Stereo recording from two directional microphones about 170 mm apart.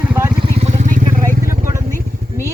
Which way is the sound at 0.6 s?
45° right (ahead or behind).